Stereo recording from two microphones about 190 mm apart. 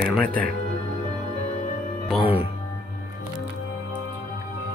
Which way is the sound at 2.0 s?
10° right (ahead or behind).